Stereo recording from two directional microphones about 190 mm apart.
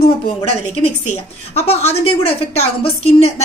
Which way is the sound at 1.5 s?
35° left (ahead or behind).